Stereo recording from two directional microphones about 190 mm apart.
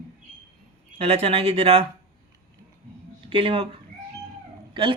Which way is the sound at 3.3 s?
30° right (ahead or behind).